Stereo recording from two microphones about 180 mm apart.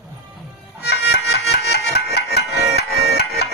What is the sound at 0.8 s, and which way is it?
Music, 65° left (ahead or behind).